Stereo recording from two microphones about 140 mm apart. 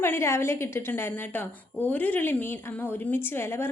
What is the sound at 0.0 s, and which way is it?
A woman's voice, 15° left (ahead or behind).